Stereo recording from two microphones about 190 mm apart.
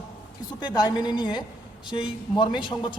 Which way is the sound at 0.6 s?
20° left (ahead or behind).